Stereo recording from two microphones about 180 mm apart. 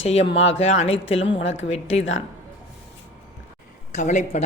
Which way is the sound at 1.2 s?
85° left.